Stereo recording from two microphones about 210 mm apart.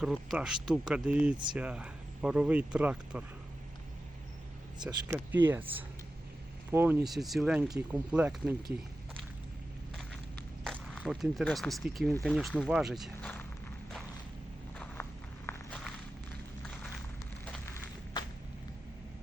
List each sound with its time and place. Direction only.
0.0 s speech: 5° right (ahead or behind)
5.0 s speech: 10° right (ahead or behind)
9.9 s a sound: centre (ahead or behind)
10.6 s speech: centre (ahead or behind)
15.4 s walk: 5° left (ahead or behind)
18.2 s a sound: 20° left (ahead or behind)